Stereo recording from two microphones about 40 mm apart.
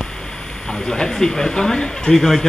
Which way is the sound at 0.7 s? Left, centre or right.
Centre.